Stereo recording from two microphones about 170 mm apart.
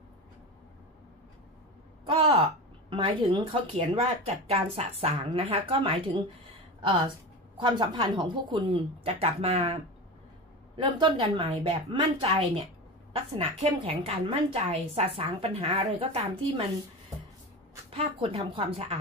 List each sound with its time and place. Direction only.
2.0 s a sound: 30° right (ahead or behind)
2.9 s a woman's voice: 30° right (ahead or behind)
7.5 s a woman's voice: 30° right (ahead or behind)
10.8 s a woman's voice: 30° right (ahead or behind)
17.8 s a woman's voice: 35° right (ahead or behind)